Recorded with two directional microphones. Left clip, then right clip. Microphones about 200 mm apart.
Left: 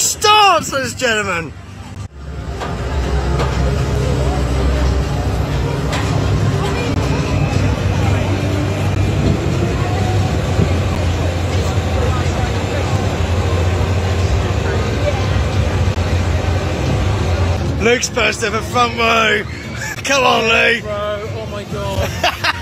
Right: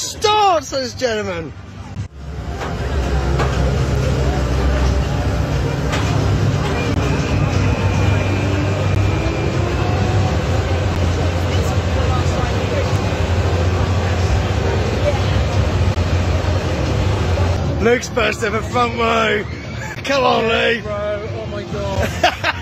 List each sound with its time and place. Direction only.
0.0 s speech: centre (ahead or behind)
17.8 s speech: centre (ahead or behind)
22.2 s a sound: 50° right (ahead or behind)